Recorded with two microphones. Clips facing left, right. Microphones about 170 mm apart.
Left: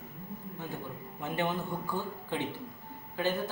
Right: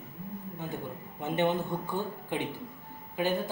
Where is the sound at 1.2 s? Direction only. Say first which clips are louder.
Right 5 dB; 20° right (ahead or behind).